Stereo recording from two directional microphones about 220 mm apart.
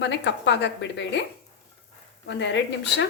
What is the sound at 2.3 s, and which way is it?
Speech, 55° left (ahead or behind).